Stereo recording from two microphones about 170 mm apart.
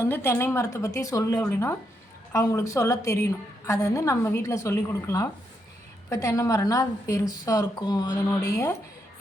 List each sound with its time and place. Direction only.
0.0 s a woman's voice: 15° left (ahead or behind)